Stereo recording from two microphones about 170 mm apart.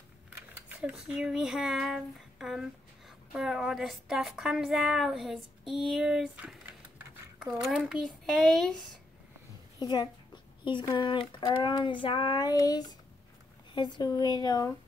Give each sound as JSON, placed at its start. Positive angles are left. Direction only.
{"t": 0.7, "sound": "speech", "side_deg": -5}
{"t": 9.8, "sound": "a child's voice", "side_deg": 25}
{"t": 11.0, "sound": "child singing", "side_deg": 30}